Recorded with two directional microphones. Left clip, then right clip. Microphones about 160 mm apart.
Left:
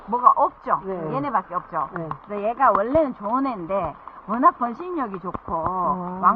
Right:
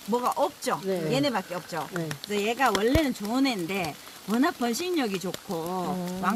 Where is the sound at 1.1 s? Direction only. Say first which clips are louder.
Left 6 dB; 5° right (ahead or behind).